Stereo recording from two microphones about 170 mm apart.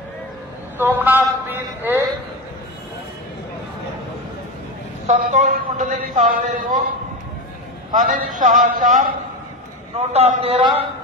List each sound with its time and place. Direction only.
0.7 s a man's voice: 10° right (ahead or behind)
5.0 s a man's voice: 45° right (ahead or behind)
7.9 s a man's voice: 50° right (ahead or behind)
9.9 s a man's voice: 40° right (ahead or behind)